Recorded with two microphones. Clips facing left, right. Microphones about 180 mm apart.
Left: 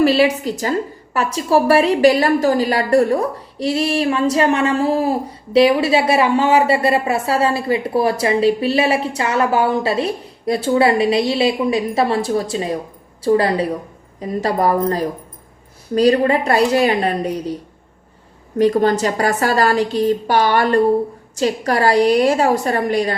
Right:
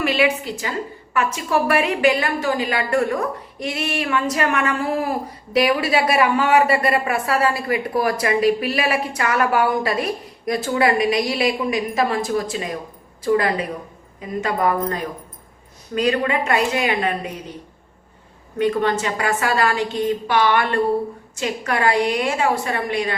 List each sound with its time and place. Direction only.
0.0 s a woman's voice: 35° left (ahead or behind)
18.5 s a woman's voice: 40° left (ahead or behind)